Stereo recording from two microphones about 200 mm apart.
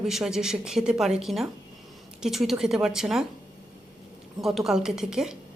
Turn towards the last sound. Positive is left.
turn(degrees=-5)  # may be behind; listen again after turning